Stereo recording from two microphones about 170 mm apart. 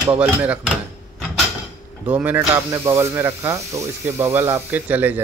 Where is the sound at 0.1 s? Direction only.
10° right (ahead or behind).